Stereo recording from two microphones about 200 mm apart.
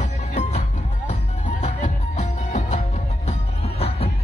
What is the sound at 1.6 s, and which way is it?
Music, 35° left (ahead or behind).